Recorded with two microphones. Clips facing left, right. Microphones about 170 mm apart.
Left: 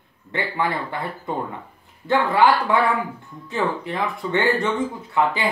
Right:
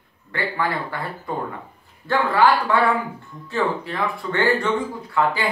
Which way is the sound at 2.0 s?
20° left (ahead or behind).